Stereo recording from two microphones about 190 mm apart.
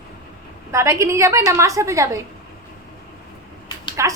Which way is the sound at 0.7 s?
15° right (ahead or behind).